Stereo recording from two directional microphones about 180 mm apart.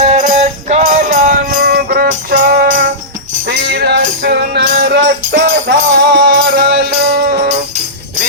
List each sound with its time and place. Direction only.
0.0 s music: 40° right (ahead or behind); by 5.1 s 70° right (ahead or behind)
5.4 s music: 90° right
6.3 s music: 55° right (ahead or behind)